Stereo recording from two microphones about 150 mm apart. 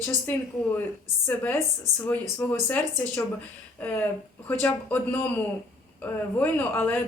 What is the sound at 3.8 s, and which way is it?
Speech, 10° left (ahead or behind).